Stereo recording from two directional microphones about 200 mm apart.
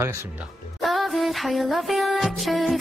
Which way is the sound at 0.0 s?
10° right (ahead or behind).